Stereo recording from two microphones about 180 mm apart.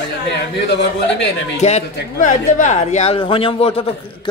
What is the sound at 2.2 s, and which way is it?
A man's voice, 45° left (ahead or behind).